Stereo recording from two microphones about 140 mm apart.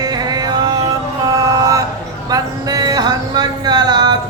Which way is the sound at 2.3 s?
25° right (ahead or behind).